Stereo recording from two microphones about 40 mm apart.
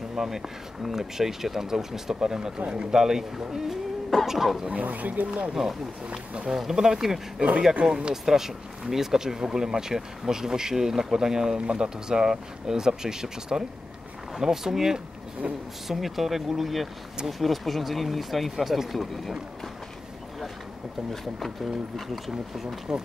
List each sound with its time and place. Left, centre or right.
0.1 s a sound: centre
0.8 s speech: centre; by 2.9 s right
2.9 s speech: centre
4.6 s speech: right
5.5 s speech: centre
8.1 s speech: centre
15.4 s speech: right
15.9 s speech: centre
21.9 s speech: centre
22.3 s speech: centre